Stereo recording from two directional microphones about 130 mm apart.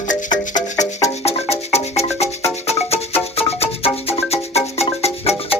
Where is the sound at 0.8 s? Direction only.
55° left (ahead or behind).